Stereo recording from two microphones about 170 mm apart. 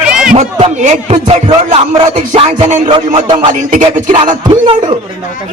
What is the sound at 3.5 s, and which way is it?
Speech, 50° right (ahead or behind).